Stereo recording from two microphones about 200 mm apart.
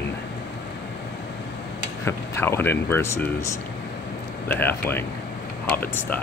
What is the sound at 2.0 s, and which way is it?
Speech, 10° left (ahead or behind).